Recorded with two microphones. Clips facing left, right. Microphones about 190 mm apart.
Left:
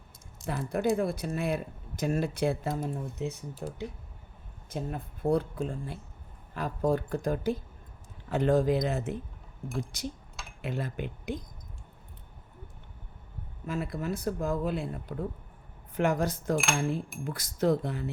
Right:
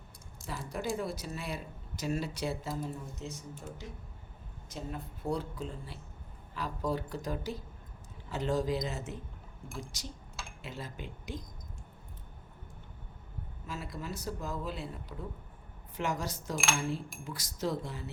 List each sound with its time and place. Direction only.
0.4 s speech: 60° left (ahead or behind)
13.7 s speech: 55° left (ahead or behind)